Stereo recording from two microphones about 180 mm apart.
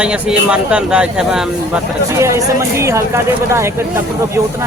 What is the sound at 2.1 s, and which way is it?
Speech, 15° right (ahead or behind).